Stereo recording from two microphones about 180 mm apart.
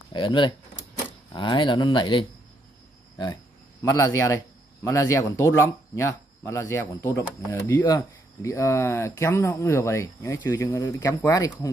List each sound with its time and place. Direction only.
0.1 s speech: 25° left (ahead or behind)
3.8 s speech: 15° left (ahead or behind)